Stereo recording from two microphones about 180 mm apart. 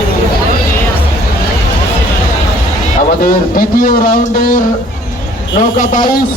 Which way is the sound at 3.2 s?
50° left (ahead or behind).